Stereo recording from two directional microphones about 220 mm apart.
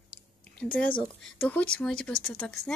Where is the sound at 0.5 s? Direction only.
5° left (ahead or behind).